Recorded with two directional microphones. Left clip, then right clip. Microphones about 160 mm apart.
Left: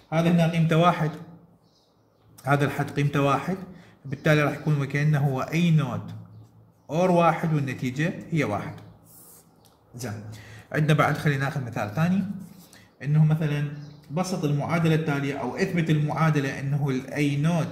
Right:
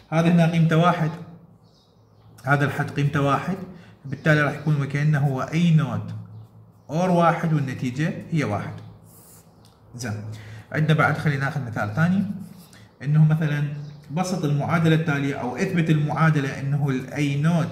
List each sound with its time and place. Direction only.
0.1 s a man's voice: 30° left (ahead or behind)
2.4 s a man's voice: 35° left (ahead or behind)
9.9 s a man's voice: 40° left (ahead or behind)